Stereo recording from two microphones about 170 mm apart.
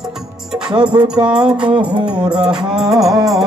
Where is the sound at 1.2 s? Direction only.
5° right (ahead or behind).